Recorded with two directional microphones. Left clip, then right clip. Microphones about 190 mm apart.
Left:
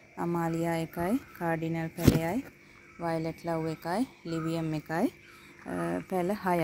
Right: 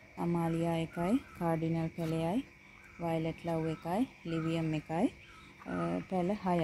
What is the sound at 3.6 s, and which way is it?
Speech, 10° left (ahead or behind).